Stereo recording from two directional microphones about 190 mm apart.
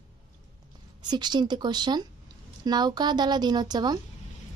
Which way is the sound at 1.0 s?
20° right (ahead or behind).